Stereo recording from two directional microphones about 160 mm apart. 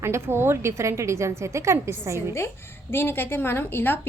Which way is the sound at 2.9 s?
15° left (ahead or behind).